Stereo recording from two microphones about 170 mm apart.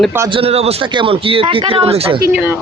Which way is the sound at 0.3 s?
35° right (ahead or behind).